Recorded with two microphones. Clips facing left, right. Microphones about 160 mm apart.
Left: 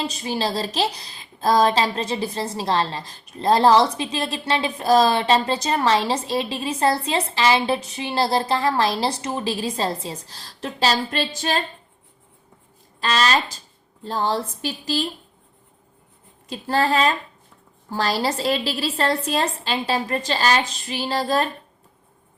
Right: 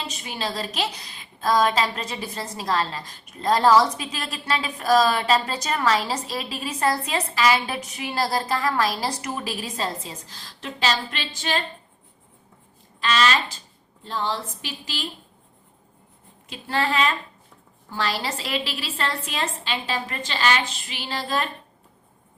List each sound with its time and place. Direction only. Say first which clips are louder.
0.1 s a woman's voice: left 6 dB; 35° left (ahead or behind)
13.0 s a woman's voice: left 1 dB; 40° left (ahead or behind)
16.5 s a woman's voice: left 4 dB; 40° left (ahead or behind)